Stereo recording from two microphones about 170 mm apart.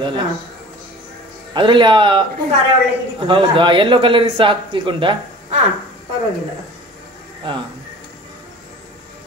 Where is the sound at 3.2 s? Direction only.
30° right (ahead or behind).